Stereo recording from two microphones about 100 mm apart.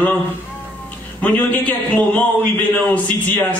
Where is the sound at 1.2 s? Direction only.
15° left (ahead or behind).